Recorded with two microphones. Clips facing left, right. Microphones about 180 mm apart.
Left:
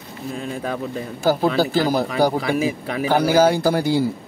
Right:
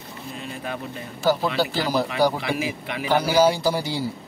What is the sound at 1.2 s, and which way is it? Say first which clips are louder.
Speech: left 3 dB; 45° left (ahead or behind).